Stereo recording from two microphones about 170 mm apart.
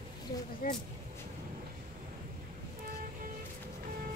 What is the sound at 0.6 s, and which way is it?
Speech, 55° left (ahead or behind).